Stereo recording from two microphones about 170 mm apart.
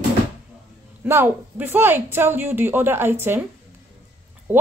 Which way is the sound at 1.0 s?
15° right (ahead or behind).